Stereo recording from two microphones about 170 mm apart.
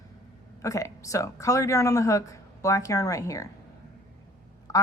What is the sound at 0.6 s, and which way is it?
A woman's voice, 20° left (ahead or behind).